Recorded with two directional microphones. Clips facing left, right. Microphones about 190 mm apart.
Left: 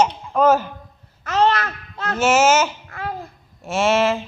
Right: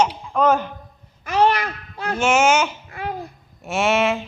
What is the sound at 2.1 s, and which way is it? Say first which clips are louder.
Speech: left 2 dB; 5° left (ahead or behind).